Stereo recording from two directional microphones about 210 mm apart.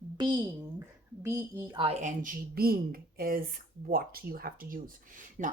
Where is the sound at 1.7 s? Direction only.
30° right (ahead or behind).